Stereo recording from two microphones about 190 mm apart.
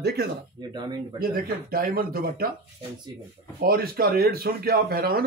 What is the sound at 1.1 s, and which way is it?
Speech, 50° right (ahead or behind).